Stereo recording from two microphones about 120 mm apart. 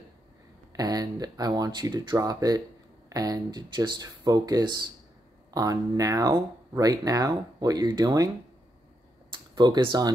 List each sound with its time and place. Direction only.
0.7 s speech: 30° right (ahead or behind)
9.3 s speech: 40° right (ahead or behind)